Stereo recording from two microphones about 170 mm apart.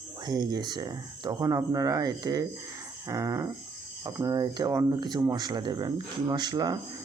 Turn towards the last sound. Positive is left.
turn(degrees=-25)  # may be behind; listen again after turning